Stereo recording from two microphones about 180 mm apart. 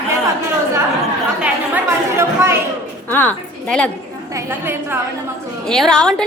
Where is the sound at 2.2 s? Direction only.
15° right (ahead or behind).